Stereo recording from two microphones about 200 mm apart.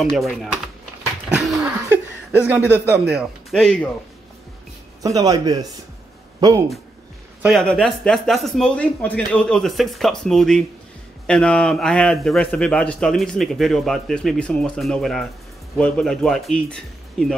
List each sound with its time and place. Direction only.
0.0 s a man's voice: centre (ahead or behind)
5.0 s a man's voice: 20° right (ahead or behind)
7.4 s a man's voice: centre (ahead or behind)